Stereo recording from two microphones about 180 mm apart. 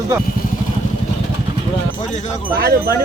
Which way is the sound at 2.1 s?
40° left (ahead or behind).